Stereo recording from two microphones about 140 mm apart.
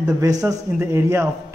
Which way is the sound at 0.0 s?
25° right (ahead or behind).